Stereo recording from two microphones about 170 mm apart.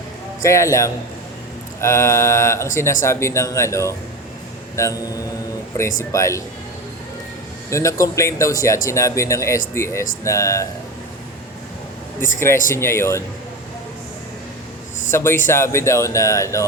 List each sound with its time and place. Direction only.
0.4 s speech: 15° left (ahead or behind)
7.7 s speech: 15° left (ahead or behind)
12.7 s speech: 15° left (ahead or behind)
15.1 s speech: 15° left (ahead or behind)